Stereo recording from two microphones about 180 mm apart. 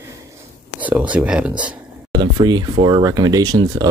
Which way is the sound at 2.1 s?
25° right (ahead or behind).